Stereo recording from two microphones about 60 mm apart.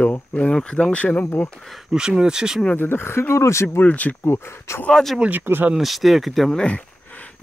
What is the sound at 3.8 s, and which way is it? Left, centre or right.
Speech, left.